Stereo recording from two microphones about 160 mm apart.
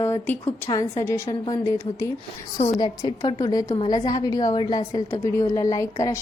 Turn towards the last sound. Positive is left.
turn(degrees=20)  # may be behind; listen again after turning